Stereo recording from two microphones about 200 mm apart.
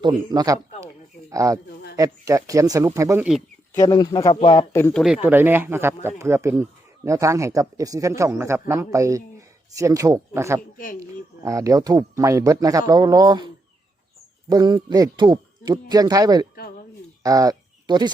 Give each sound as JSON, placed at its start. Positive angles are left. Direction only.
{"t": 0.0, "sound": "speech", "side_deg": -20}
{"t": 3.8, "sound": "speech", "side_deg": 20}
{"t": 4.7, "sound": "speech", "side_deg": 10}
{"t": 5.0, "sound": "speech", "side_deg": -5}
{"t": 14.5, "sound": "speech", "side_deg": -20}